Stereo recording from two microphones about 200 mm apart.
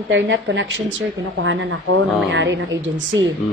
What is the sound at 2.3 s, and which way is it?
Speech, 60° right (ahead or behind).